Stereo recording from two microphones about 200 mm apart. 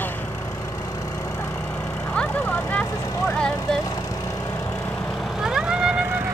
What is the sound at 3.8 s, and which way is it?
Vehicle, 15° left (ahead or behind).